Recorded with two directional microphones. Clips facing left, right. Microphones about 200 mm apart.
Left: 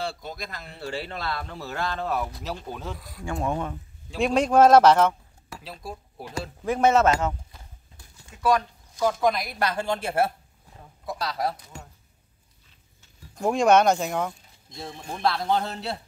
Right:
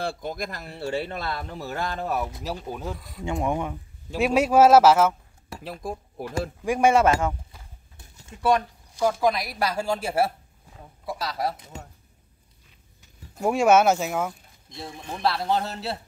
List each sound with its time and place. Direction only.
0.0 s speech: 50° right (ahead or behind)
0.7 s speech: 20° right (ahead or behind); by 3.3 s centre (ahead or behind)
3.3 s speech: 15° right (ahead or behind)
5.6 s speech: 50° right (ahead or behind)
6.6 s speech: 10° right (ahead or behind)
8.0 s a sound: 25° right (ahead or behind)
8.9 s speech: 5° right (ahead or behind)
11.7 s a sound: 20° right (ahead or behind)
13.3 s speech: 5° right (ahead or behind)